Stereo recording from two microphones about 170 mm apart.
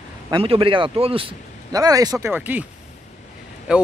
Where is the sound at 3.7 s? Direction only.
5° right (ahead or behind).